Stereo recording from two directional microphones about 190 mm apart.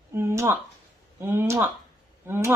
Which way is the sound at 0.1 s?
15° right (ahead or behind).